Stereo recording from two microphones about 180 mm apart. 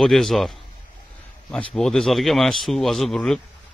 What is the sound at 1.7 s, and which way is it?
A man's voice, centre (ahead or behind).